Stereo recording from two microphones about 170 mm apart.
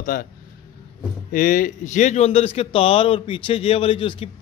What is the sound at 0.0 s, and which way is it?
Speech, 50° left (ahead or behind).